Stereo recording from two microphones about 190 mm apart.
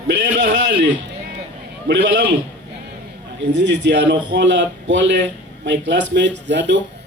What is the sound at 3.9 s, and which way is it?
Speech, 70° right (ahead or behind).